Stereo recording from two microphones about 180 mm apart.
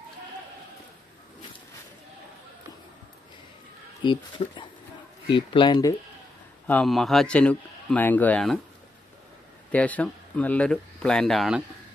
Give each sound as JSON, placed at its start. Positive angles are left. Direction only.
{"t": 4.0, "sound": "speech", "side_deg": 25}
{"t": 6.7, "sound": "a man's voice", "side_deg": 0}
{"t": 9.7, "sound": "speech", "side_deg": 10}